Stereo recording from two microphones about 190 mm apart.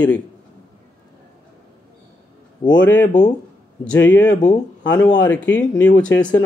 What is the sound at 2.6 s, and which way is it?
Speech, 20° left (ahead or behind).